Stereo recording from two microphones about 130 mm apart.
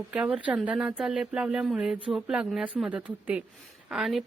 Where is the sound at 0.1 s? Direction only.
10° right (ahead or behind).